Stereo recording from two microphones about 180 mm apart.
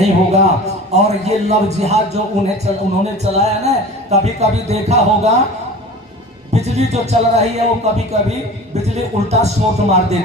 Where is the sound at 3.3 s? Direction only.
40° right (ahead or behind).